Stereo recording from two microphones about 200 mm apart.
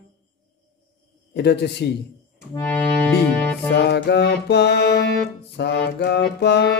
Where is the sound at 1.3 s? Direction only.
55° left (ahead or behind).